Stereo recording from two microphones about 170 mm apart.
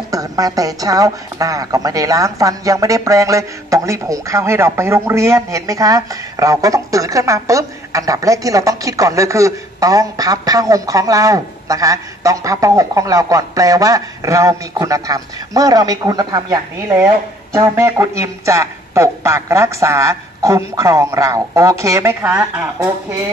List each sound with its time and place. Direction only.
0.1 s a woman's voice: 20° right (ahead or behind)